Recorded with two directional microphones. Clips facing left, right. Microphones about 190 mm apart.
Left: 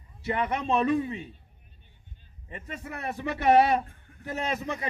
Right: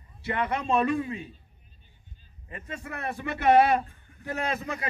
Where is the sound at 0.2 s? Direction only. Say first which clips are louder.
Even; 20° left (ahead or behind).